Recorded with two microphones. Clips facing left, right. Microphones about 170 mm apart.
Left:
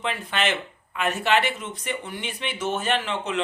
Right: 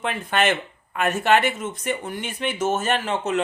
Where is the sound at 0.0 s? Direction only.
50° right (ahead or behind).